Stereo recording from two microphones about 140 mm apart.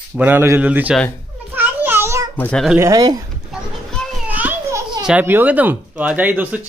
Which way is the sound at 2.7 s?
25° right (ahead or behind).